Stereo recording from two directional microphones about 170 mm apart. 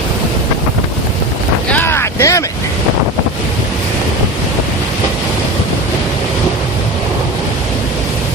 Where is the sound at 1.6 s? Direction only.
10° left (ahead or behind).